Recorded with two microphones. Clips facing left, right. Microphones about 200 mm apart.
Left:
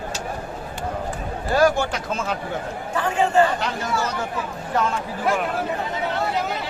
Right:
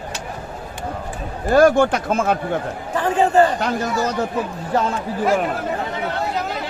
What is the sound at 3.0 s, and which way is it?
Speech, 35° right (ahead or behind).